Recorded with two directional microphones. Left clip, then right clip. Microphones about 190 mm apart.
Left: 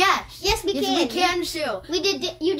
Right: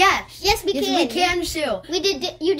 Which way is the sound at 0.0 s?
20° right (ahead or behind).